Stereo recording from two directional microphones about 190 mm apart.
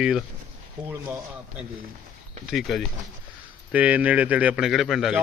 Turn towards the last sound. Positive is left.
turn(degrees=0)  # may be behind; listen again after turning